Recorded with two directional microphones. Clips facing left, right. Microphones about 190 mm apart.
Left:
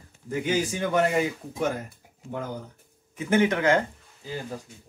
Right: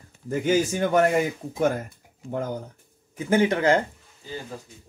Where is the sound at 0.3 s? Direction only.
45° right (ahead or behind).